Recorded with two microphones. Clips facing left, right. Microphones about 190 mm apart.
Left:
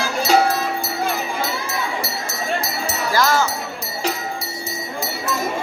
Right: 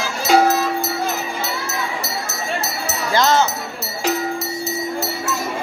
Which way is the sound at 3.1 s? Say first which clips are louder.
Right 2 dB; 20° right (ahead or behind).